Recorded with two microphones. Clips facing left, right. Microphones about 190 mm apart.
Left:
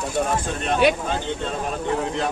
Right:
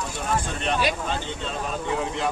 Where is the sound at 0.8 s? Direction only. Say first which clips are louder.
Left 11 dB; 60° left (ahead or behind).